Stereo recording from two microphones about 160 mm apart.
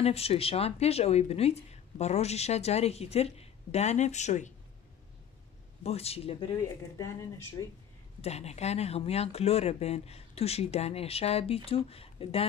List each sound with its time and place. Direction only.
0.0 s speech: 40° left (ahead or behind)
5.9 s speech: 40° left (ahead or behind)
7.0 s speech: 20° left (ahead or behind)
8.2 s speech: 40° left (ahead or behind)